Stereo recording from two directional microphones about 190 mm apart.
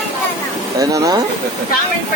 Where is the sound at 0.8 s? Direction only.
20° right (ahead or behind).